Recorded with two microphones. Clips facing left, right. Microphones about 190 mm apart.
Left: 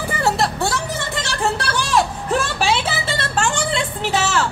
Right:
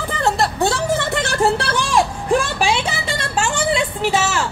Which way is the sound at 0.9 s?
55° right (ahead or behind).